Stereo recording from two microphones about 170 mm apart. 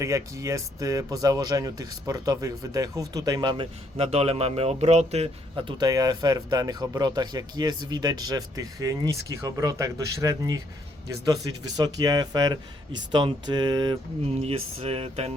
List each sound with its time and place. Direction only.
0.0 s speech: 20° right (ahead or behind)
11.8 s speech: 20° right (ahead or behind)
14.3 s speech: 35° right (ahead or behind)